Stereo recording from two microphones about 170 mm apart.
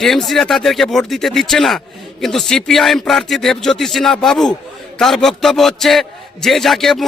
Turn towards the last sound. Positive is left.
turn(degrees=0)  # may be behind; listen again after turning